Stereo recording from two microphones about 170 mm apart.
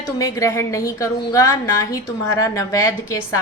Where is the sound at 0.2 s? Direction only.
20° left (ahead or behind).